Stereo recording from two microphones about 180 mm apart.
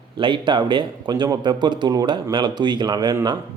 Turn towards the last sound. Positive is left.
turn(degrees=-20)  # may be behind; listen again after turning